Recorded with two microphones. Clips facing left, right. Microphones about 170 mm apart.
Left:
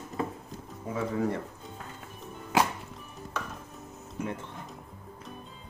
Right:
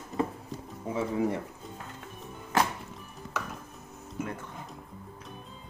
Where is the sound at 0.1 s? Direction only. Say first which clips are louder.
Right 3 dB; centre (ahead or behind).